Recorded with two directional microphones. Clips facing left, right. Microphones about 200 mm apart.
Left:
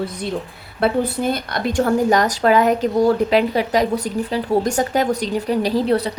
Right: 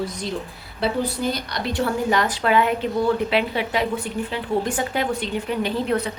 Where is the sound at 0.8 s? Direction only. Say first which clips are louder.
Left 4 dB; 55° left (ahead or behind).